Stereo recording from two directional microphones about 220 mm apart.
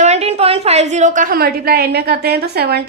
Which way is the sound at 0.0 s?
30° right (ahead or behind).